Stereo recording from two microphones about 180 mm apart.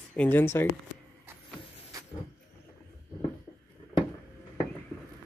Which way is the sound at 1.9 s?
20° right (ahead or behind).